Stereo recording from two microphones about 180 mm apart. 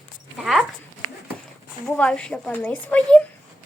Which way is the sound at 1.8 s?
5° left (ahead or behind).